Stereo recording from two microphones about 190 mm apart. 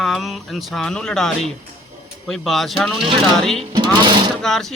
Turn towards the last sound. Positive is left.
turn(degrees=0)  # may be behind; listen again after turning